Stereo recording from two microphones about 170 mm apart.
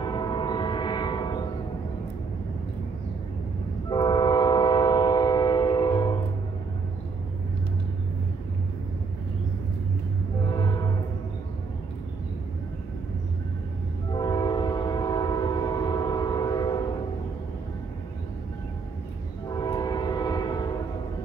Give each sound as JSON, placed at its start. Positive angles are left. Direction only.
{"t": 0.0, "sound": "train", "side_deg": 25}
{"t": 3.9, "sound": "train", "side_deg": 25}
{"t": 10.4, "sound": "music", "side_deg": 25}
{"t": 14.1, "sound": "train", "side_deg": 25}
{"t": 19.5, "sound": "train", "side_deg": 25}